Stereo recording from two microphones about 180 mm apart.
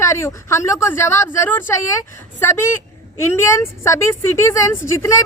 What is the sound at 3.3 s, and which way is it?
Speech, 15° left (ahead or behind).